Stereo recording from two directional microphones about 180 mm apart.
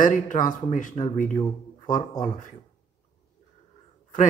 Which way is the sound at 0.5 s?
45° left (ahead or behind).